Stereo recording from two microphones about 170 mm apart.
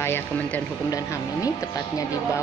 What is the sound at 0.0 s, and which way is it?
Speech, 15° left (ahead or behind).